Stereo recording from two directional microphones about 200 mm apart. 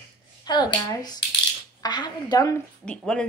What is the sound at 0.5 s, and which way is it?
Speech, 20° left (ahead or behind).